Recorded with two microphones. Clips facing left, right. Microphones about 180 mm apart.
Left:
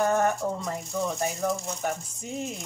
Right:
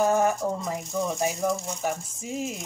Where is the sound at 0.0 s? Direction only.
10° right (ahead or behind).